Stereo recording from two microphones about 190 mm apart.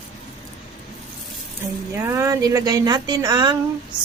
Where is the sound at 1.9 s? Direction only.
15° right (ahead or behind).